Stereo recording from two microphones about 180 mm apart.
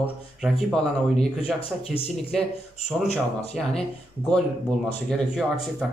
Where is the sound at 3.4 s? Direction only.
35° left (ahead or behind).